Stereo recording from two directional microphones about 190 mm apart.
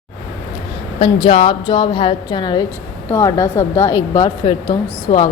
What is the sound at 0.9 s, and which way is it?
A woman's voice, 30° left (ahead or behind).